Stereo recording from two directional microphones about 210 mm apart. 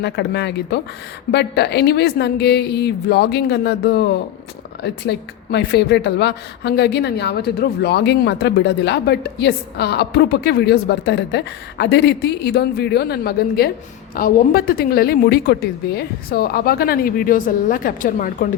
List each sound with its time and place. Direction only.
0.0 s a woman's voice: 55° left (ahead or behind)